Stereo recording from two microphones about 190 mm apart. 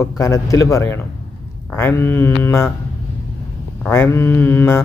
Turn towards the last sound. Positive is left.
turn(degrees=10)  # may be behind; listen again after turning